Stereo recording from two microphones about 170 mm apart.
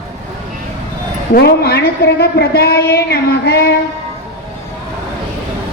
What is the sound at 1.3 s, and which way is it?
A woman's voice, 70° left (ahead or behind).